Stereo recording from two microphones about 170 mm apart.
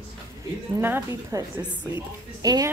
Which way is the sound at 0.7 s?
15° right (ahead or behind).